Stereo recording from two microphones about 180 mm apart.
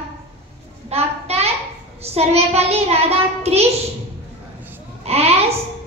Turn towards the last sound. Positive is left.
turn(degrees=-35)  # may be behind; listen again after turning